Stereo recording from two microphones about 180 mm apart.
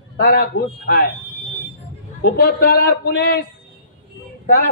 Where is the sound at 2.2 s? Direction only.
60° left (ahead or behind).